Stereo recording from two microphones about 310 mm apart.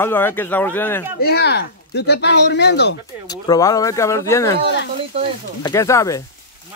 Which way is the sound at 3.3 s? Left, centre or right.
Centre.